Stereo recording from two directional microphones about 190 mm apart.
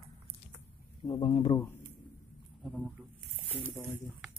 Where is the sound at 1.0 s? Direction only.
25° left (ahead or behind).